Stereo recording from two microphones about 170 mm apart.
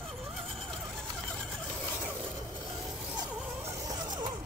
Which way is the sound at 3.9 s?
25° right (ahead or behind).